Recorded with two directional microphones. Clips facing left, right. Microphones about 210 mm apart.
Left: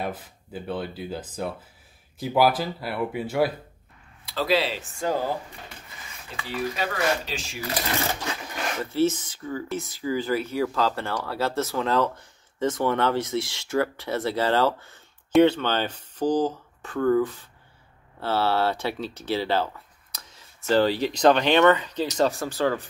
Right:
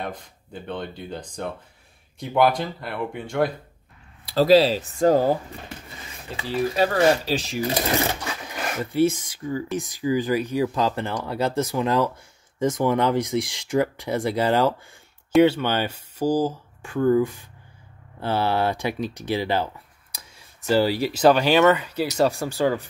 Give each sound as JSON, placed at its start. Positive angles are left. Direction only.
{"t": 0.0, "sound": "speech", "side_deg": 5}
{"t": 4.3, "sound": "speech", "side_deg": -40}
{"t": 6.3, "sound": "speech", "side_deg": -35}
{"t": 8.5, "sound": "a sound", "side_deg": -5}
{"t": 8.9, "sound": "speech", "side_deg": -10}